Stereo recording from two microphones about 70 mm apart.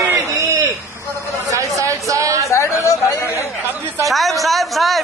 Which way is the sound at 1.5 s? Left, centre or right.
Right.